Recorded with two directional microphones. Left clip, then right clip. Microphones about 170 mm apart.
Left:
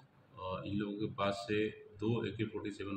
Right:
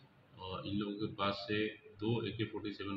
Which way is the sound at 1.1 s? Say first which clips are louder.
Left 2 dB; 15° left (ahead or behind).